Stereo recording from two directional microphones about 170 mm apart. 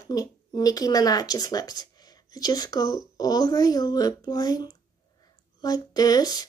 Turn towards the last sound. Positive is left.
turn(degrees=20)  # may be behind; listen again after turning